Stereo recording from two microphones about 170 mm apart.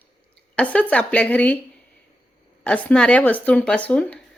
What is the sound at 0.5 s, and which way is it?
Speech, 10° left (ahead or behind).